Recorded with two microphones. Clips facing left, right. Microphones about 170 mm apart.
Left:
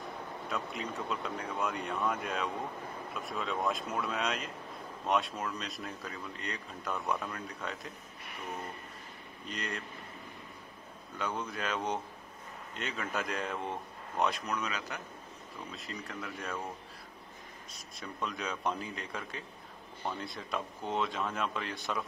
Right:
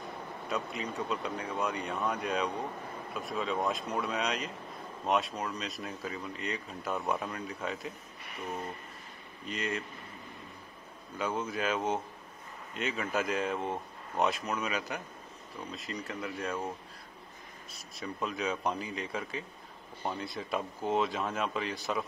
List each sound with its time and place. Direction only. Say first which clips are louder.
0.5 s speech: right 3 dB; centre (ahead or behind)
6.9 s speech: right 2 dB; 25° right (ahead or behind)
7.2 s speech: right 3 dB; 5° right (ahead or behind)
9.5 s speech: right 4 dB; centre (ahead or behind)
11.1 s speech: right 3 dB; 5° right (ahead or behind)
15.7 s speech: right 4 dB; centre (ahead or behind)
17.9 s speech: right 3 dB; centre (ahead or behind)